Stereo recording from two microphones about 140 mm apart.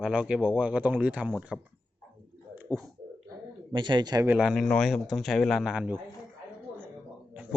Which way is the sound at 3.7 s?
35° right (ahead or behind).